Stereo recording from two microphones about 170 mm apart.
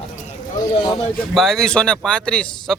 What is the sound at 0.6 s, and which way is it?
Speech, 20° left (ahead or behind).